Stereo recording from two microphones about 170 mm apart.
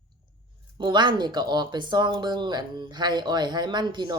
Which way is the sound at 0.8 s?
25° right (ahead or behind).